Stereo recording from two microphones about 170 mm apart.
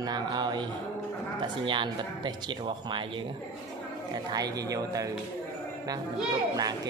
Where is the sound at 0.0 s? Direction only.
25° right (ahead or behind).